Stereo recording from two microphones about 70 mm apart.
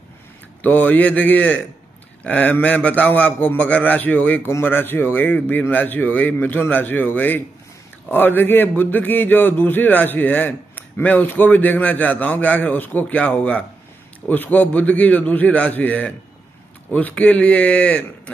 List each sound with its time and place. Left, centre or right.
0.6 s speech: left